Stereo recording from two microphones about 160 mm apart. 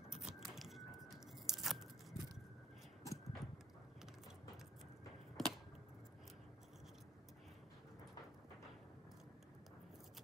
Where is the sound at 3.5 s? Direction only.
5° right (ahead or behind).